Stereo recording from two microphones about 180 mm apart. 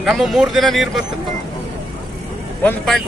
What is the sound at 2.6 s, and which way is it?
Speech, 5° left (ahead or behind).